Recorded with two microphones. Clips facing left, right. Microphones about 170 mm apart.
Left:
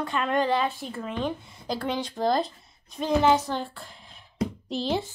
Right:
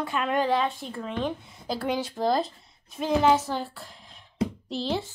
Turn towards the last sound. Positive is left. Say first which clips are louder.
# left 1 dB
turn(degrees=15)  # may be behind; listen again after turning